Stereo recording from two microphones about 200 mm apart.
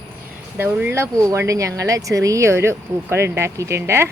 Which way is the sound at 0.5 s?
10° right (ahead or behind).